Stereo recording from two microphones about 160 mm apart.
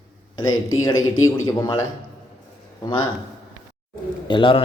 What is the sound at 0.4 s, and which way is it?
Speech, 20° left (ahead or behind).